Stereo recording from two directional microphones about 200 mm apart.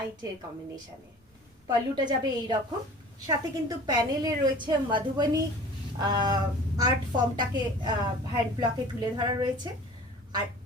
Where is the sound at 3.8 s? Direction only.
20° right (ahead or behind).